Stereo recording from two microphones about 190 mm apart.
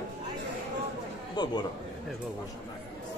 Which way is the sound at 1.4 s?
20° left (ahead or behind).